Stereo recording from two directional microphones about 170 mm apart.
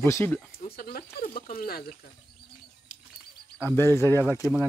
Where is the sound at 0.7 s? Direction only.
60° left (ahead or behind).